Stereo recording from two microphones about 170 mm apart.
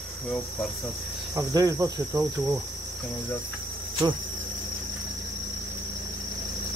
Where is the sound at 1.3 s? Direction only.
20° right (ahead or behind).